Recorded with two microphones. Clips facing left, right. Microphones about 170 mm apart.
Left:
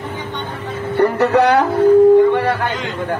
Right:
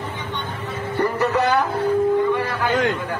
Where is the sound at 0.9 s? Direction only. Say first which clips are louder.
Left 7 dB; 70° left (ahead or behind).